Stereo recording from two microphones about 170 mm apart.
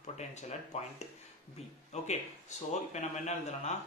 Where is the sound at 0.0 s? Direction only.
40° left (ahead or behind).